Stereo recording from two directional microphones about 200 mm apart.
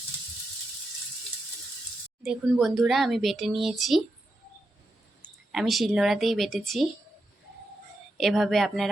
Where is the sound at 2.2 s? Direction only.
5° right (ahead or behind).